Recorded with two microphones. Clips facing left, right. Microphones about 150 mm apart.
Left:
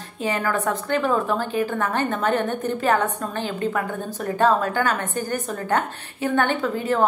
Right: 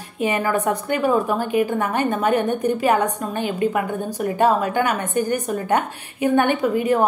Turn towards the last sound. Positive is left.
turn(degrees=-15)  # may be behind; listen again after turning